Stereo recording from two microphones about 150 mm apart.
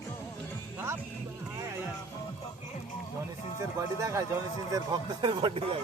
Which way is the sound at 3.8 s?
20° right (ahead or behind).